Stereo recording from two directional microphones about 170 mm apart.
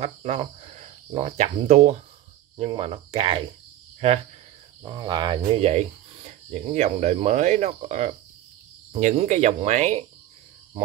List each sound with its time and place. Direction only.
0.0 s speech: 35° right (ahead or behind)
2.5 s cricket: 30° right (ahead or behind)
4.8 s cricket: 25° right (ahead or behind)
5.5 s speech: 35° right (ahead or behind)